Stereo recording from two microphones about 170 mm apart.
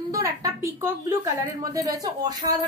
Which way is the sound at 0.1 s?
20° right (ahead or behind).